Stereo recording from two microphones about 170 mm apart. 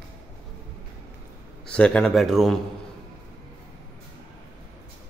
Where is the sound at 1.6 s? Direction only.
5° left (ahead or behind).